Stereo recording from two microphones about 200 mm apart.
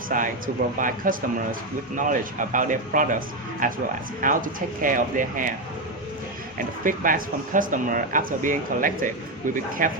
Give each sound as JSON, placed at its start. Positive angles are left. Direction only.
{"t": 0.1, "sound": "speech", "side_deg": -40}
{"t": 6.8, "sound": "speech", "side_deg": -45}